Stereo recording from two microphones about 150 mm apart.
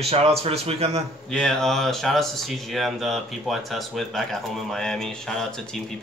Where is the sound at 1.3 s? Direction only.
5° left (ahead or behind).